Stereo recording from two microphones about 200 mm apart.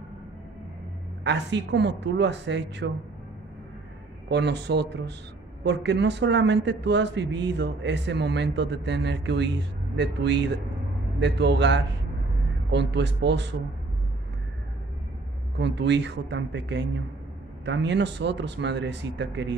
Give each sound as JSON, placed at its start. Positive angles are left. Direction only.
{"t": 1.2, "sound": "a man's voice", "side_deg": -60}
{"t": 4.3, "sound": "a man's voice", "side_deg": -60}
{"t": 15.5, "sound": "a man's voice", "side_deg": -60}